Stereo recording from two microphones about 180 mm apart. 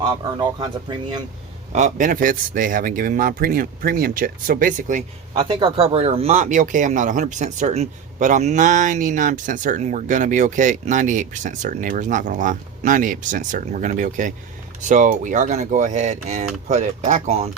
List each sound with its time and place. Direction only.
0.0 s speech: 20° right (ahead or behind)
1.7 s speech: 45° right (ahead or behind)
5.4 s speech: 30° right (ahead or behind)